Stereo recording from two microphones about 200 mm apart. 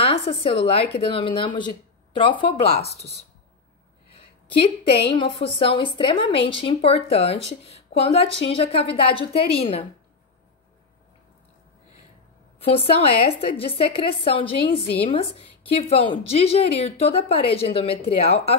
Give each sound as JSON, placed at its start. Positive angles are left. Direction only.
{"t": 0.0, "sound": "a woman's voice", "side_deg": 30}
{"t": 4.5, "sound": "a woman's voice", "side_deg": 25}
{"t": 12.5, "sound": "a woman's voice", "side_deg": 30}